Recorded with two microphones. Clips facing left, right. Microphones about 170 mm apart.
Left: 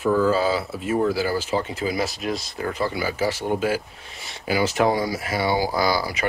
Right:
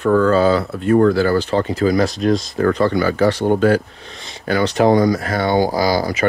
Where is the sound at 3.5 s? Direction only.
5° left (ahead or behind).